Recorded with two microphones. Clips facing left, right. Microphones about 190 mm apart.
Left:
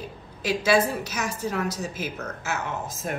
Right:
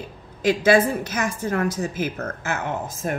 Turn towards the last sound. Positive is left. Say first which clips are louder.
# right 4 dB
turn(degrees=-55)  # may be behind; listen again after turning